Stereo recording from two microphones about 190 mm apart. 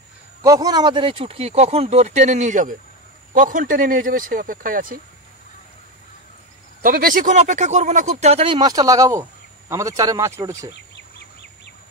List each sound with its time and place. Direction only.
0.4 s speech: 20° right (ahead or behind); by 5.0 s 50° right (ahead or behind)
6.8 s speech: 50° right (ahead or behind); by 10.7 s 15° right (ahead or behind)
10.7 s insect: 65° left (ahead or behind)